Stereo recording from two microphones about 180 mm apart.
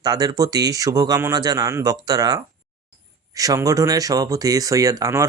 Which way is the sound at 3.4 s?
20° right (ahead or behind).